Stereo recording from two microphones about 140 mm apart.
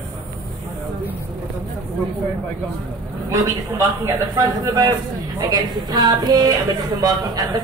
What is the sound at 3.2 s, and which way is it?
A man's voice, 20° right (ahead or behind).